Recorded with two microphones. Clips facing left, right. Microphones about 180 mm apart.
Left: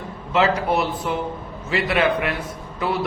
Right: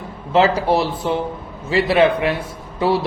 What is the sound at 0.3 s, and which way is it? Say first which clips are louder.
A man's voice: right 4 dB; 30° right (ahead or behind).